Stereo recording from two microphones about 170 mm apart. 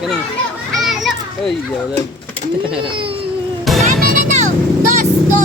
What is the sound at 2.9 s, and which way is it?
Speech, 30° right (ahead or behind).